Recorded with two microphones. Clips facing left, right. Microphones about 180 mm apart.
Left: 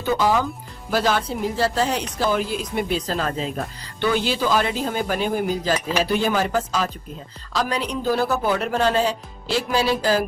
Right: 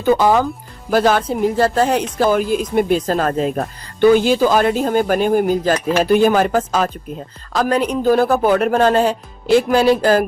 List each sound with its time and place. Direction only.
0.0 s a woman's voice: 50° right (ahead or behind)